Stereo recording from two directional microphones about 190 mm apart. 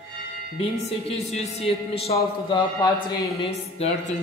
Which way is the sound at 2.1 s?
20° left (ahead or behind).